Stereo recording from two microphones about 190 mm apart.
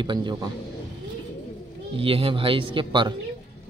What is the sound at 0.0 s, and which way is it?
Speech, 25° right (ahead or behind).